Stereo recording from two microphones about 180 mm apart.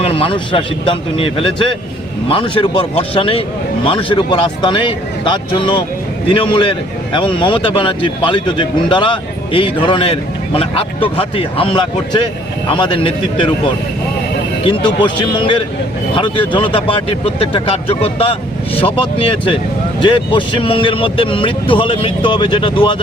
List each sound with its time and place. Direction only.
0.0 s speech: 30° left (ahead or behind)
14.8 s speech: 25° left (ahead or behind)
20.0 s speech: 30° left (ahead or behind)